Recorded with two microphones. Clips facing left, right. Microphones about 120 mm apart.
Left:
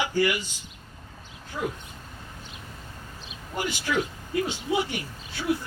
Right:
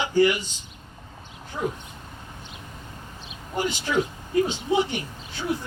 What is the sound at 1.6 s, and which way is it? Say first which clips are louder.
Speech: right 2 dB; 25° right (ahead or behind).